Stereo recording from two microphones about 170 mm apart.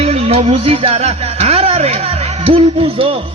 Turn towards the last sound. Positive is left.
turn(degrees=-30)  # may be behind; listen again after turning